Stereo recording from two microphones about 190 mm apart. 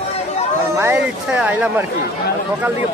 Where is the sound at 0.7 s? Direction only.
10° right (ahead or behind).